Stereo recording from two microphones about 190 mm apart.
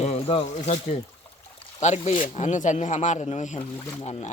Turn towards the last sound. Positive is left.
turn(degrees=35)  # may be behind; listen again after turning